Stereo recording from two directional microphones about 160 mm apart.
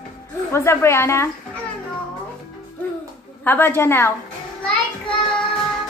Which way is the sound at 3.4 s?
15° left (ahead or behind).